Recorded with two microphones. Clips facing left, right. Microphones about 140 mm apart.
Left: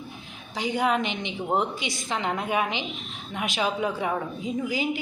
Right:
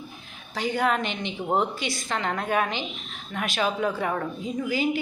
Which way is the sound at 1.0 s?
50° right (ahead or behind).